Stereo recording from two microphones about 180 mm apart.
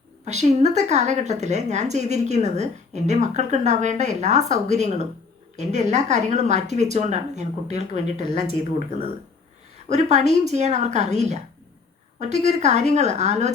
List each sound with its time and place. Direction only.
0.3 s speech: 40° right (ahead or behind)
9.9 s speech: 40° right (ahead or behind)